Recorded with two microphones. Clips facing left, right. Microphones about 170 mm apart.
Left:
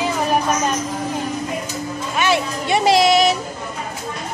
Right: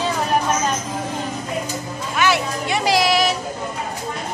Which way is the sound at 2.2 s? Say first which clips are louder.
Even; 25° left (ahead or behind).